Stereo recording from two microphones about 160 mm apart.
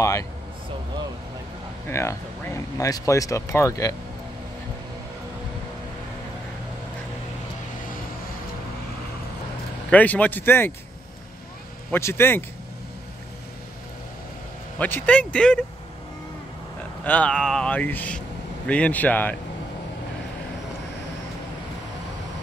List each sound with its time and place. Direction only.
0.0 s speech: 20° left (ahead or behind)
1.9 s speech: 15° left (ahead or behind)
9.8 s speech: 10° left (ahead or behind)
11.9 s speech: 15° left (ahead or behind)
14.8 s speech: 10° left (ahead or behind)
17.0 s speech: 10° left (ahead or behind)